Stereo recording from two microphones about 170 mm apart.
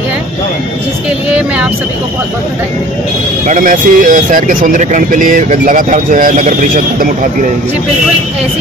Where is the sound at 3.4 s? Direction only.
50° right (ahead or behind).